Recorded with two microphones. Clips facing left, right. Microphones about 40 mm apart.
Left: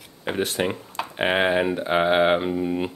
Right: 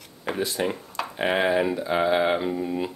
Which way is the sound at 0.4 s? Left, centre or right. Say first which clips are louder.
Left 2 dB; left.